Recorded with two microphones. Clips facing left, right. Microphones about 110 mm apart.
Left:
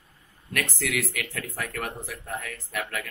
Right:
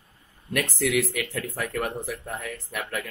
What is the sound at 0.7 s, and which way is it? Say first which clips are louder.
Speech: right 5 dB; 15° right (ahead or behind).